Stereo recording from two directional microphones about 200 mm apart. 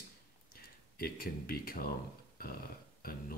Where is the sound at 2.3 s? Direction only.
50° left (ahead or behind).